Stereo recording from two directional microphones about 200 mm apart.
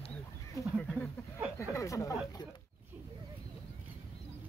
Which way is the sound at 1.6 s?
15° left (ahead or behind).